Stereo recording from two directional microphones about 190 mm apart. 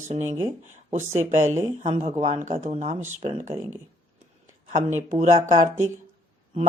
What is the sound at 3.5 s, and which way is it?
Speech, 15° right (ahead or behind).